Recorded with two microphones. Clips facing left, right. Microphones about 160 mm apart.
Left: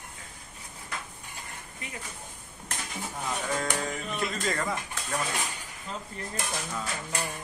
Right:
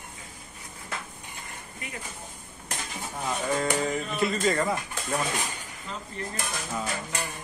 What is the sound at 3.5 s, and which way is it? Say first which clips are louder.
Speech: right 6 dB; 5° right (ahead or behind).